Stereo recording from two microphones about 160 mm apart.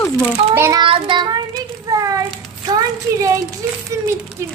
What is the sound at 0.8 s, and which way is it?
Speech, 30° right (ahead or behind).